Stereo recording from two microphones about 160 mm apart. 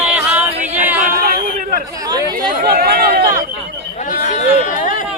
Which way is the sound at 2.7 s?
70° right (ahead or behind).